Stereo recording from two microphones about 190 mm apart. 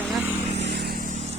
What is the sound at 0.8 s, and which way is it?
Vehicle, 50° right (ahead or behind).